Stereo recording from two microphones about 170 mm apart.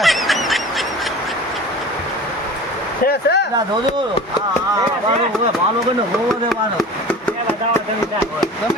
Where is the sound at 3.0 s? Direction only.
80° left.